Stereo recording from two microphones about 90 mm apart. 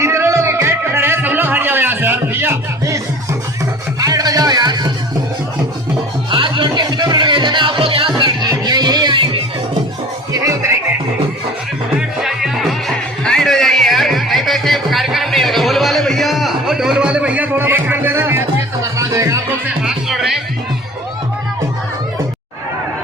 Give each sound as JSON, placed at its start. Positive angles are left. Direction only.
{"t": 0.0, "sound": "music", "side_deg": -30}
{"t": 4.0, "sound": "music", "side_deg": -40}
{"t": 6.3, "sound": "music", "side_deg": -65}
{"t": 8.4, "sound": "music", "side_deg": -50}
{"t": 9.1, "sound": "music", "side_deg": -70}
{"t": 11.9, "sound": "music", "side_deg": -5}
{"t": 19.8, "sound": "music", "side_deg": -5}